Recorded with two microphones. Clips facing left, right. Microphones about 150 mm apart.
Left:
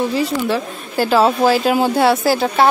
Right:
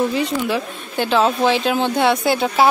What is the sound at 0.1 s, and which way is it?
Speech, centre (ahead or behind).